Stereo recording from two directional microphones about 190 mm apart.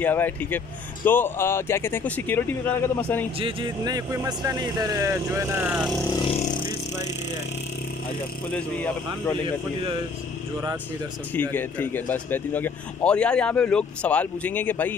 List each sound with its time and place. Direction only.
0.0 s speech: 10° left (ahead or behind)
3.3 s speech: 25° right (ahead or behind); by 5.9 s 10° right (ahead or behind)
8.5 s speech: 10° left (ahead or behind)
11.3 s speech: 10° left (ahead or behind)